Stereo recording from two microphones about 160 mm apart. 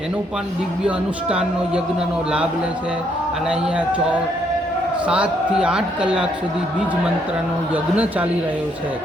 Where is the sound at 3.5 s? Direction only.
5° right (ahead or behind).